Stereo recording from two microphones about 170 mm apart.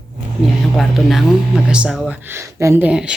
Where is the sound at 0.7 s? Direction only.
Centre (ahead or behind).